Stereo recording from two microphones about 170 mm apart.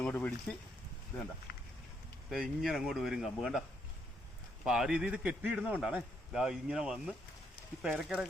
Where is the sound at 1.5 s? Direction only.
75° left (ahead or behind).